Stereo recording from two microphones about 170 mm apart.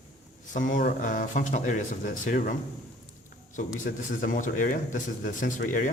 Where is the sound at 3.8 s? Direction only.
50° left (ahead or behind).